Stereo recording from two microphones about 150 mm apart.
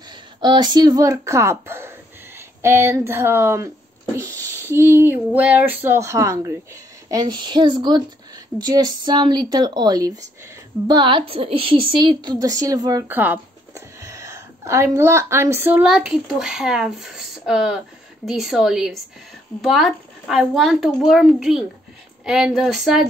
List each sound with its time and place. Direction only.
0.1 s speech: 30° right (ahead or behind)
4.2 s a sound: 20° right (ahead or behind)
10.9 s a woman's voice: 30° right (ahead or behind)
13.1 s speech: 10° right (ahead or behind)